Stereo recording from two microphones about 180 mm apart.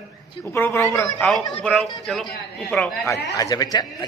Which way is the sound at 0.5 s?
10° left (ahead or behind).